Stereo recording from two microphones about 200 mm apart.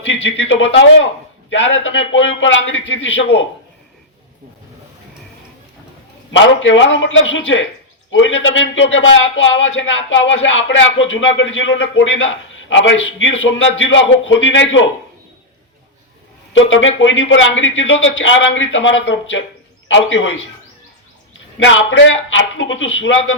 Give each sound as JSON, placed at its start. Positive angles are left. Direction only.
{"t": 0.0, "sound": "a man's voice", "side_deg": 65}
{"t": 6.3, "sound": "a man's voice", "side_deg": 70}
{"t": 16.5, "sound": "a man's voice", "side_deg": 70}